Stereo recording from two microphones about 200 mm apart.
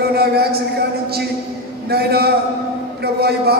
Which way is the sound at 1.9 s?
50° right (ahead or behind).